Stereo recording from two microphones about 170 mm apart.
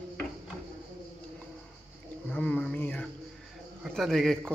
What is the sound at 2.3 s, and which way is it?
Speech, 10° left (ahead or behind).